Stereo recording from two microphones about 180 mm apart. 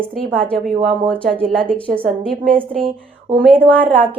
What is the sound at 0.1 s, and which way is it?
A woman's voice, 5° left (ahead or behind).